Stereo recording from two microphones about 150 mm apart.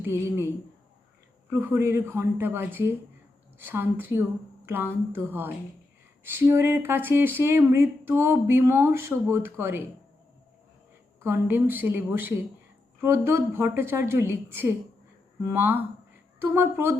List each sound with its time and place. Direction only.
0.0 s speech: 15° right (ahead or behind)
11.4 s speech: 15° right (ahead or behind)